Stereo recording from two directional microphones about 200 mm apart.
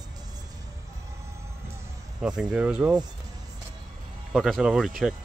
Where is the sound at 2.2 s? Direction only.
5° right (ahead or behind).